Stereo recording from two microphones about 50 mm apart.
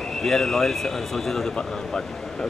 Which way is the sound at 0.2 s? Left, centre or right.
Centre.